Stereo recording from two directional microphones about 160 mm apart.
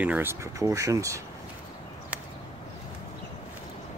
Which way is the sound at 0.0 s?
10° right (ahead or behind).